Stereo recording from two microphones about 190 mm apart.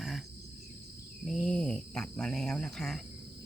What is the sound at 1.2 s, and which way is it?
Cricket, centre (ahead or behind).